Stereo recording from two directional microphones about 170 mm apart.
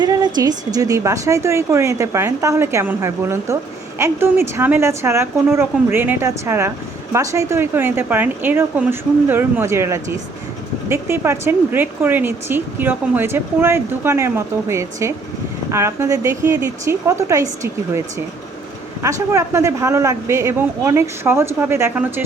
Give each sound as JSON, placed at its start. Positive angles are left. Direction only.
{"t": 0.0, "sound": "a woman's voice", "side_deg": -25}
{"t": 19.0, "sound": "a woman's voice", "side_deg": -15}